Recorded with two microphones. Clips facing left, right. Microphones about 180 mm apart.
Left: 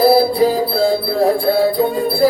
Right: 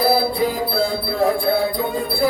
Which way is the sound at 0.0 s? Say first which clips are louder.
Left 6 dB; 35° left (ahead or behind).